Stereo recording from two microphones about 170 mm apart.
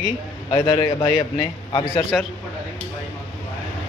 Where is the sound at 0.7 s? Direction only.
30° left (ahead or behind).